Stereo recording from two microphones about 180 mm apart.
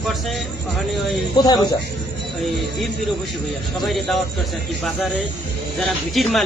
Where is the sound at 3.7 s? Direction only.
Centre (ahead or behind).